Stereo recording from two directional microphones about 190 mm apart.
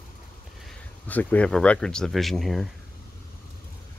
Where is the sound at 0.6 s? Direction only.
10° left (ahead or behind).